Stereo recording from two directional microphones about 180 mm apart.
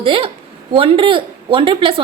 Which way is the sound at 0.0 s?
30° right (ahead or behind).